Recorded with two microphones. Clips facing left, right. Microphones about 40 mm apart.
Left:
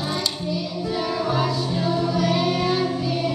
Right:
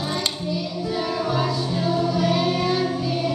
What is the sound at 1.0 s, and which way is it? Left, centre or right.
Music, centre.